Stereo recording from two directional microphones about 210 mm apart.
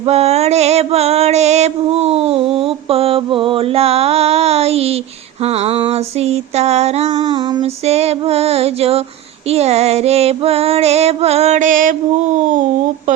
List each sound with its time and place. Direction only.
0.0 s music: 30° right (ahead or behind)
5.4 s female singing: 30° right (ahead or behind)
7.2 s female singing: 20° right (ahead or behind); by 11.9 s 40° right (ahead or behind)